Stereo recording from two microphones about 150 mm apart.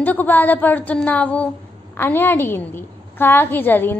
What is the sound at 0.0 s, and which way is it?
A woman's voice, 10° left (ahead or behind).